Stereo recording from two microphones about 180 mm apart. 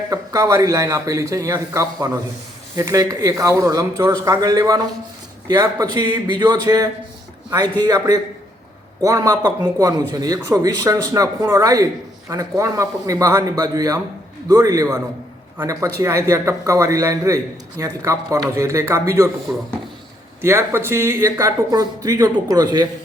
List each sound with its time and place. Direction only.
0.1 s a man's voice: 20° right (ahead or behind)